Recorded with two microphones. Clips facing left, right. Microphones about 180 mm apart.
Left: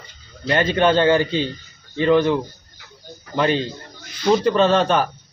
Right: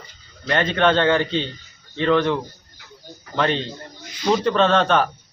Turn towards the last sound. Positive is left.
turn(degrees=5)  # may be behind; listen again after turning